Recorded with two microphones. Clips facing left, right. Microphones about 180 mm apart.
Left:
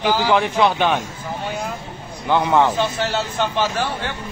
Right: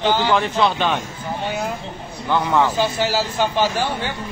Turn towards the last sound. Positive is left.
turn(degrees=0)  # may be behind; listen again after turning